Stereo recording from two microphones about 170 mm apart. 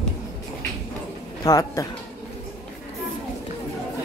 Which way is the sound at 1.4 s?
20° left (ahead or behind).